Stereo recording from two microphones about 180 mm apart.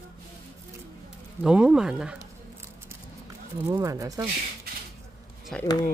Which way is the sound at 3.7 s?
20° right (ahead or behind).